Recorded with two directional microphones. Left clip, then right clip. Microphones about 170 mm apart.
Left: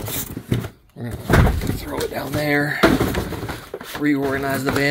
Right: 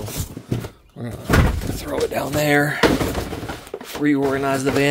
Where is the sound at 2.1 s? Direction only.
25° right (ahead or behind).